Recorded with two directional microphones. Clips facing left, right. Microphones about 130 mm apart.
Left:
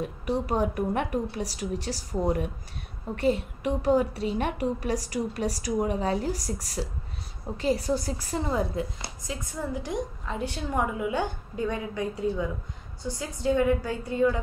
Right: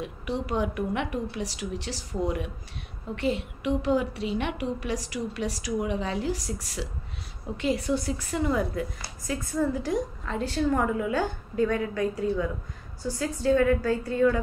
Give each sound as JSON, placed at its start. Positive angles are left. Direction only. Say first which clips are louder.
{"t": 0.0, "sound": "a woman's voice", "louder": "left 3 dB", "side_deg": 40}